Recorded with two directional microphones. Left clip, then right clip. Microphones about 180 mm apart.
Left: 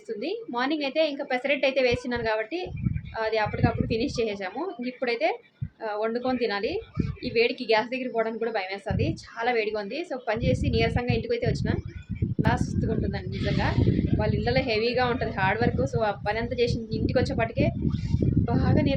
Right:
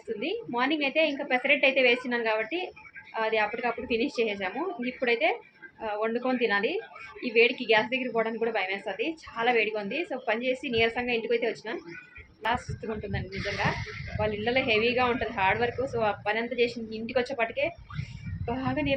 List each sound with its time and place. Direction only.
0.2 s a woman's voice: 20° left (ahead or behind)
13.1 s a woman's voice: 20° left (ahead or behind)